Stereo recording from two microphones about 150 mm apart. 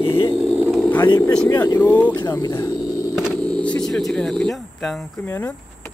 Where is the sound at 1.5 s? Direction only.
25° left (ahead or behind).